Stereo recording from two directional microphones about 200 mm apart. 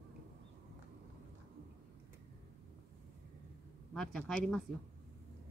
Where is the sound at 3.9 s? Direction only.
5° left (ahead or behind).